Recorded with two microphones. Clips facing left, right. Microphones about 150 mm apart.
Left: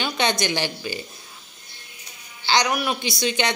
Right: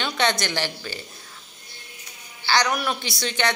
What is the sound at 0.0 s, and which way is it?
Speech, 15° left (ahead or behind).